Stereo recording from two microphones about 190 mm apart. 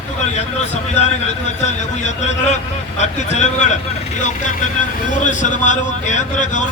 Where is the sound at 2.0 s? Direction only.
35° left (ahead or behind).